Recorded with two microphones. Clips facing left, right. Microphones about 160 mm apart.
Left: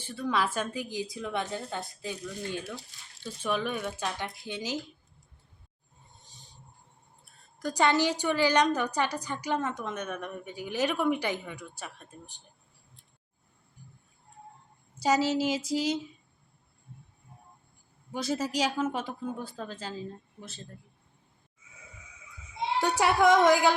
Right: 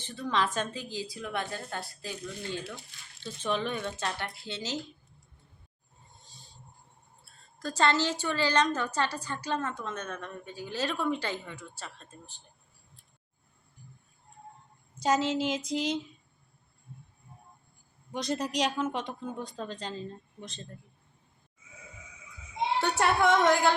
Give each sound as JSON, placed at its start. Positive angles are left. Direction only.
{"t": 0.0, "sound": "a woman's voice", "side_deg": 10}
{"t": 6.2, "sound": "wild animals", "side_deg": 15}
{"t": 7.3, "sound": "a woman's voice", "side_deg": 15}
{"t": 14.9, "sound": "a woman's voice", "side_deg": 10}
{"t": 18.1, "sound": "speech", "side_deg": 5}
{"t": 22.8, "sound": "a woman's voice", "side_deg": 10}